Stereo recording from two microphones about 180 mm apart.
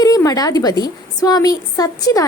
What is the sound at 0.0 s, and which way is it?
A woman's voice, 20° left (ahead or behind).